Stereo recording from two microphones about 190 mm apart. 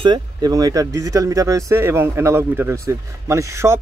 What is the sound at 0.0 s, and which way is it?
Speech, 20° right (ahead or behind).